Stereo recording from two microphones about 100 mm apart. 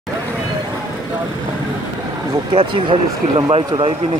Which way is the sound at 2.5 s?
60° right (ahead or behind).